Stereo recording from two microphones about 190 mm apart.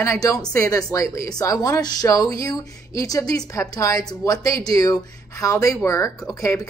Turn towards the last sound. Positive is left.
turn(degrees=15)  # may be behind; listen again after turning